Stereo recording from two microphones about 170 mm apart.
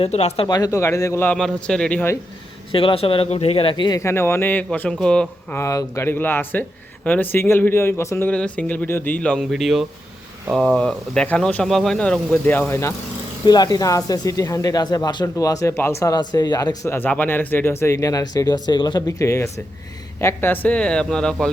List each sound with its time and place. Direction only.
0.0 s speech: 40° left (ahead or behind)
0.4 s speech: 20° left (ahead or behind)
2.7 s speech: 30° left (ahead or behind); by 12.9 s 10° left (ahead or behind)
13.4 s speech: 25° left (ahead or behind); by 21.5 s 5° left (ahead or behind)